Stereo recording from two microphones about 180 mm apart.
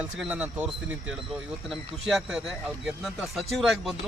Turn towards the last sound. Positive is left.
turn(degrees=0)  # may be behind; listen again after turning